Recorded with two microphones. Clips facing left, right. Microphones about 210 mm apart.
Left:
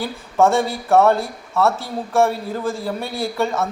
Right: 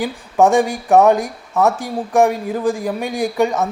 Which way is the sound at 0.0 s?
15° right (ahead or behind).